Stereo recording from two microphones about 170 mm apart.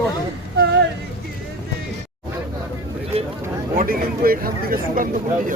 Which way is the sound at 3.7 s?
55° right (ahead or behind).